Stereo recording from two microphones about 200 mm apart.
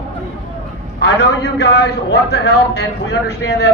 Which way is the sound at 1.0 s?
55° left (ahead or behind).